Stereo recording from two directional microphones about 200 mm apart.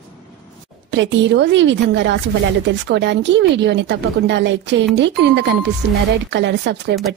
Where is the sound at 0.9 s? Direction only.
65° right (ahead or behind).